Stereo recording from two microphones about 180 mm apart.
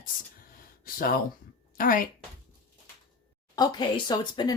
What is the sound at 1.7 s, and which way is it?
Speech, 50° left (ahead or behind).